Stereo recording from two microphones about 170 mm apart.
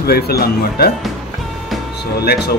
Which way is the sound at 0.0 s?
65° left (ahead or behind).